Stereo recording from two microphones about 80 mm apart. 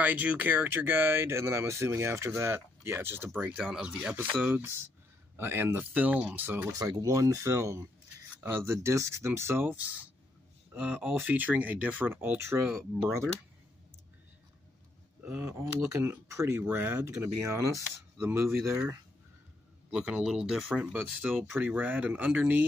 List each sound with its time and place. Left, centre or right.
0.0 s speech: centre
3.3 s speech: centre
6.7 s speech: right
15.4 s speech: right
19.9 s speech: centre
20.7 s speech: centre